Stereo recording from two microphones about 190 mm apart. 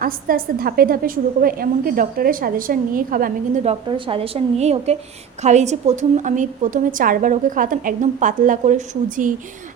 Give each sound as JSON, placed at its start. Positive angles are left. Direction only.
{"t": 0.0, "sound": "a woman's voice", "side_deg": -50}